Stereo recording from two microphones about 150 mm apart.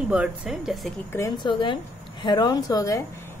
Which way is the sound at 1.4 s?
30° left (ahead or behind).